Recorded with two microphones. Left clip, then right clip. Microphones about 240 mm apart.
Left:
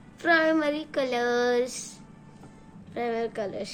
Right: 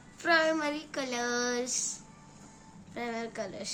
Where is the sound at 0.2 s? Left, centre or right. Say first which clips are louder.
Left 4 dB; centre.